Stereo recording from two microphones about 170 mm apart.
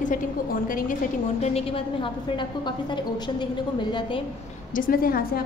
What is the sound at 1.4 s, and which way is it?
A woman's voice, 35° left (ahead or behind).